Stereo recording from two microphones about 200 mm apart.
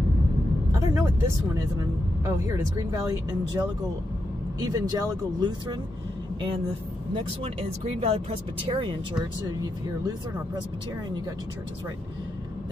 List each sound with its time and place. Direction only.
0.7 s speech: 15° right (ahead or behind)
8.0 s speech: 30° right (ahead or behind)